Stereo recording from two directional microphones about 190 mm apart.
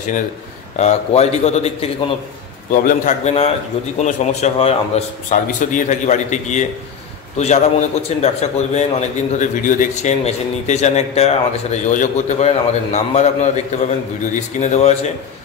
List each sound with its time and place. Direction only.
0.7 s a man's voice: 35° left (ahead or behind)
2.7 s a man's voice: 45° left (ahead or behind)